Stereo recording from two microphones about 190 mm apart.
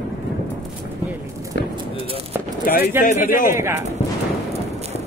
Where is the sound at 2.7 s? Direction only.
50° left (ahead or behind).